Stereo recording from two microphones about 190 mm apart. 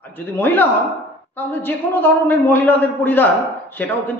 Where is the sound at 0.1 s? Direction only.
10° left (ahead or behind).